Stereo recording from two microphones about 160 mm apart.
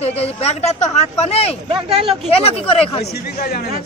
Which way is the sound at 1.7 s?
35° right (ahead or behind).